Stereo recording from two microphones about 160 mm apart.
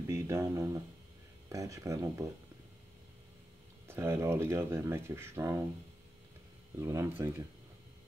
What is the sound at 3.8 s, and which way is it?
Speech, 15° right (ahead or behind).